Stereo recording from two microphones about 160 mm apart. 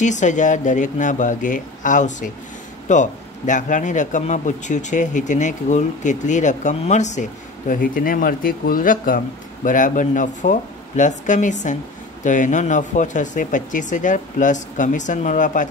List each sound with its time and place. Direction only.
0.0 s speech: 50° left (ahead or behind)